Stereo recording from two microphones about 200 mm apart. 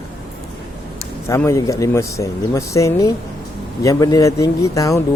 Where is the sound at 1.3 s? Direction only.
15° left (ahead or behind).